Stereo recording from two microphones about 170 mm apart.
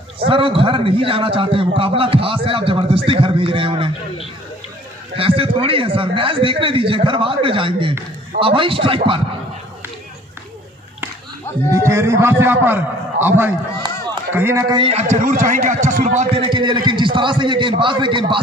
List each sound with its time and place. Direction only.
0.3 s a man's voice: 30° right (ahead or behind)
5.1 s a man's voice: 35° right (ahead or behind)
11.7 s a man's voice: 15° right (ahead or behind)
14.8 s a man's voice: 35° right (ahead or behind)
16.4 s a man's voice: 30° right (ahead or behind)